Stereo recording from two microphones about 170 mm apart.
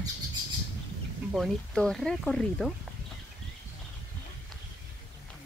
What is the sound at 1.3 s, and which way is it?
Speech, centre (ahead or behind).